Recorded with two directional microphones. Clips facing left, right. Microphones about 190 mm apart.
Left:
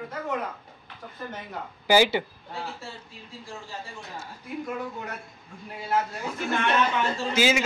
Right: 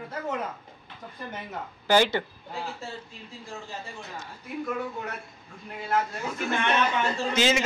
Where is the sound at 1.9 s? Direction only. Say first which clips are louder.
Left 1 dB; 10° left (ahead or behind).